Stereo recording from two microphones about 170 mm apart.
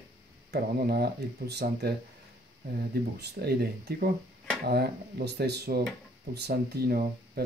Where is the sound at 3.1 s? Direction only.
70° right (ahead or behind).